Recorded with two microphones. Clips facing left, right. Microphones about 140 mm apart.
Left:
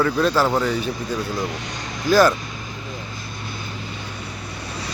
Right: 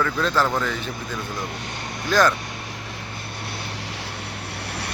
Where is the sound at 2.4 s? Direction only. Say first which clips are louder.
Left 1 dB; 70° right (ahead or behind).